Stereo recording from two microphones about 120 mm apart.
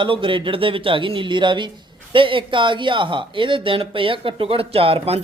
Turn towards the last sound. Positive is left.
turn(degrees=-55)  # may be behind; listen again after turning